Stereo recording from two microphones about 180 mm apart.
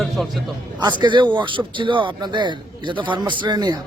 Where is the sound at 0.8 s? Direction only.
25° right (ahead or behind).